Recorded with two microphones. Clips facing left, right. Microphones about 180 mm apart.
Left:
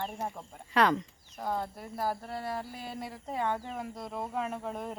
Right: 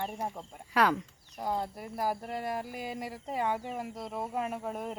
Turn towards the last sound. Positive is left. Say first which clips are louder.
# right 1 dB
turn(degrees=-5)  # may be behind; listen again after turning